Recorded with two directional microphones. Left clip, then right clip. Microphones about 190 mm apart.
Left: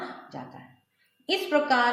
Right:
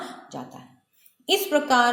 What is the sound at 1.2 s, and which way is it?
Speech, 35° right (ahead or behind).